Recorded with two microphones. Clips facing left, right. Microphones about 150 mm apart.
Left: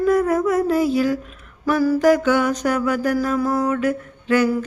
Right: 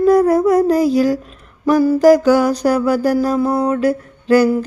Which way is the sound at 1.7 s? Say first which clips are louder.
Right 5 dB; 30° right (ahead or behind).